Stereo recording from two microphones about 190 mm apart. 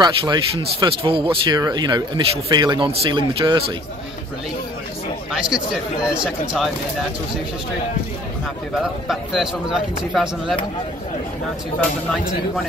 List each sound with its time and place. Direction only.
0.0 s speech: 25° right (ahead or behind)
5.3 s a man's voice: 5° right (ahead or behind)
9.0 s a man's voice: centre (ahead or behind)